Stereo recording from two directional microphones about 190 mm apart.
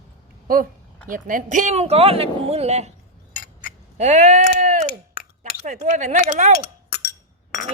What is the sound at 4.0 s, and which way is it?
Speech, 40° right (ahead or behind).